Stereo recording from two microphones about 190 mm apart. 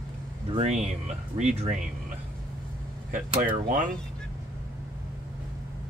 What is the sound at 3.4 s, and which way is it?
Speech, 45° right (ahead or behind).